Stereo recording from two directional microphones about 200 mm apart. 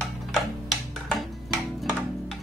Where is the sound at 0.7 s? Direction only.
Centre (ahead or behind).